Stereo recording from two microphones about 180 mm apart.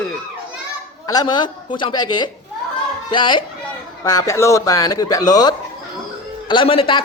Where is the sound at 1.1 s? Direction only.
20° left (ahead or behind).